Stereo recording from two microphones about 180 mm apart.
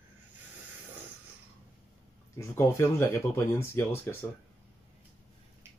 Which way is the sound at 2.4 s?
15° left (ahead or behind).